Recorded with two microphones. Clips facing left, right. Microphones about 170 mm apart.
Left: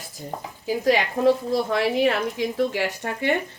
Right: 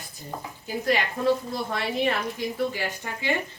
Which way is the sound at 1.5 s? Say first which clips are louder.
Left 7 dB; 90° left.